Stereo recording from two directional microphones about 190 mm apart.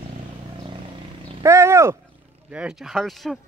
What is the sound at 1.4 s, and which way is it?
Roaring cats, 15° right (ahead or behind).